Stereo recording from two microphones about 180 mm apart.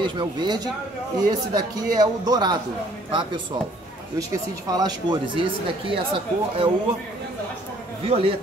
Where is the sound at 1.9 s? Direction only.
20° right (ahead or behind).